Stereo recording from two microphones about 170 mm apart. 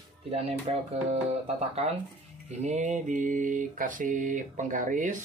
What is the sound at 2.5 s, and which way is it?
Mantra, 40° right (ahead or behind).